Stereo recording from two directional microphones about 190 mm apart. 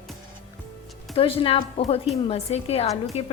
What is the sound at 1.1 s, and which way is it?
A woman's voice, 30° left (ahead or behind).